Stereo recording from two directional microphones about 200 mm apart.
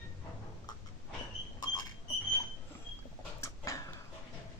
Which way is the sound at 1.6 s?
20° left (ahead or behind).